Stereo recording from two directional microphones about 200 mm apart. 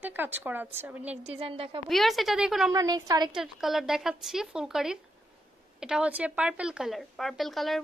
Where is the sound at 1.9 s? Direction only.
Centre (ahead or behind).